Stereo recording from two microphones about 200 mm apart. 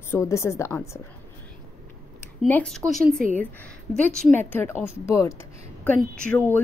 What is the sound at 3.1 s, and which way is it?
Speech, 45° right (ahead or behind).